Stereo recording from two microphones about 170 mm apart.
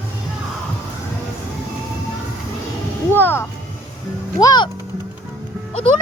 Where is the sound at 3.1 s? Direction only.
10° left (ahead or behind).